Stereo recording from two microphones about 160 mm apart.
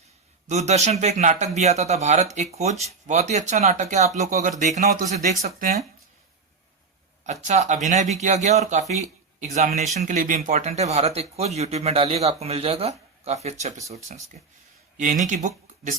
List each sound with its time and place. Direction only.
0.4 s speech: 45° right (ahead or behind)
7.4 s speech: 50° right (ahead or behind)
10.0 s speech: 55° right (ahead or behind)